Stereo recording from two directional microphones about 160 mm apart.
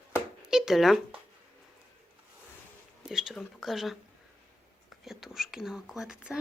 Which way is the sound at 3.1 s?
Centre (ahead or behind).